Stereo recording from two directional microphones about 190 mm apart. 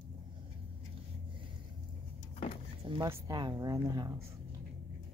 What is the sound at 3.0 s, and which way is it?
Speech, 20° right (ahead or behind).